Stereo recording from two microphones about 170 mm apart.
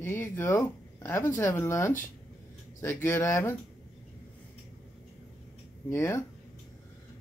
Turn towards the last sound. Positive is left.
turn(degrees=15)  # may be behind; listen again after turning